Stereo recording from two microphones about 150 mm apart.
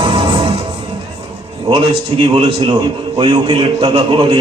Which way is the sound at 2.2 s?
35° right (ahead or behind).